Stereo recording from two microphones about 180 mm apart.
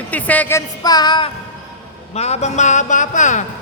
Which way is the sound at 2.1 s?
35° left (ahead or behind).